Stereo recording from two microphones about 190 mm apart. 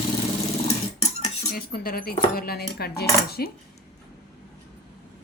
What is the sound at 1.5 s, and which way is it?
Speech, 50° left (ahead or behind).